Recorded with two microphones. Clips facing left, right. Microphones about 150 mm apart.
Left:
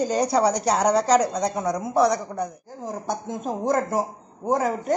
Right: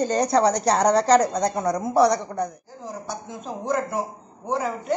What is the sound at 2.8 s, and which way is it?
A man's voice, 50° left (ahead or behind).